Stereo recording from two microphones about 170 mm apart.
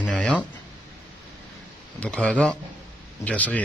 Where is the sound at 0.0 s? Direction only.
5° left (ahead or behind).